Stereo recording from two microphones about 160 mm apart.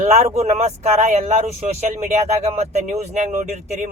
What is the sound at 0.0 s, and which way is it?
Speech, 45° right (ahead or behind).